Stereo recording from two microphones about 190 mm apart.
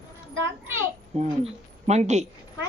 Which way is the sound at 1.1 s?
35° right (ahead or behind).